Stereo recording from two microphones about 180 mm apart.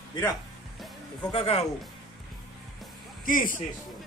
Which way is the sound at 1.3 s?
35° left (ahead or behind).